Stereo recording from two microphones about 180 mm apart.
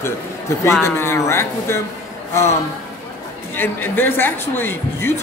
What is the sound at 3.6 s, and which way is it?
Speech, 10° left (ahead or behind).